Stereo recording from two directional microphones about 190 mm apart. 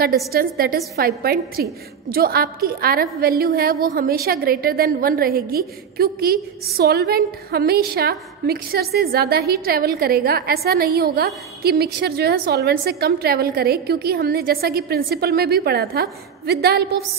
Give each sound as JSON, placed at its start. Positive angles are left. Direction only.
{"t": 0.3, "sound": "a woman's voice", "side_deg": -50}